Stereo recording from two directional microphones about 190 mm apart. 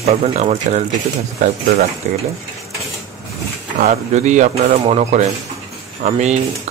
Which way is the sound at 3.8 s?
40° right (ahead or behind).